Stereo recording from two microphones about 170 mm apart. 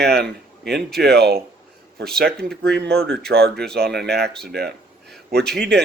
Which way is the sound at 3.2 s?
70° right (ahead or behind).